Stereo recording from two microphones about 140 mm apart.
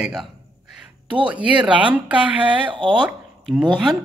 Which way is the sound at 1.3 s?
10° right (ahead or behind).